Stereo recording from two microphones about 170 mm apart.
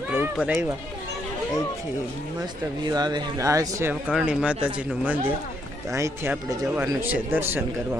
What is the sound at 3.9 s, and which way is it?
Speech, 5° right (ahead or behind).